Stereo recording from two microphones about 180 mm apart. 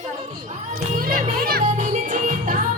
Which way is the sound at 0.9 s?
50° right (ahead or behind).